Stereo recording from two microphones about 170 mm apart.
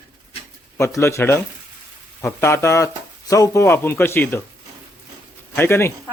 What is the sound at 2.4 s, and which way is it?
A man's voice, 15° left (ahead or behind).